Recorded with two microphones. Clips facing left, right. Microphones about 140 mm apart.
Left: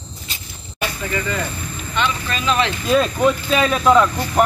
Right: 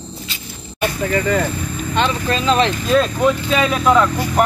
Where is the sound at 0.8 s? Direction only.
50° right (ahead or behind).